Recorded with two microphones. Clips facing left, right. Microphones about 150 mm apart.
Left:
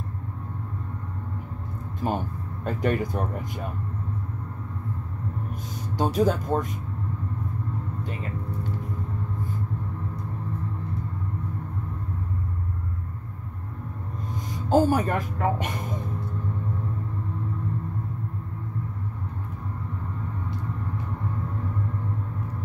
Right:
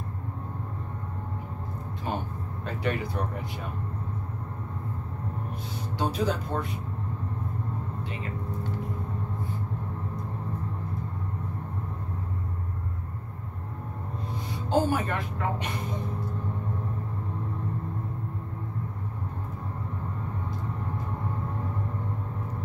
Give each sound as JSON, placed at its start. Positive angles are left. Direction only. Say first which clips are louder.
{"t": 2.6, "sound": "speech", "louder": "left 5 dB", "side_deg": 45}
{"t": 5.9, "sound": "speech", "louder": "left 5 dB", "side_deg": 45}
{"t": 14.3, "sound": "speech", "louder": "left 5 dB", "side_deg": 45}